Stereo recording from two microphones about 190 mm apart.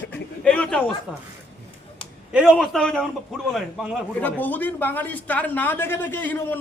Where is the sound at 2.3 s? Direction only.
5° right (ahead or behind).